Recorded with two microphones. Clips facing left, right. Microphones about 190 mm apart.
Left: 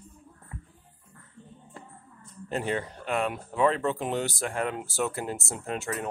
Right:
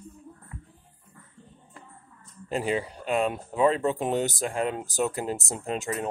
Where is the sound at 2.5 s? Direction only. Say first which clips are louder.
Right 2 dB; 10° right (ahead or behind).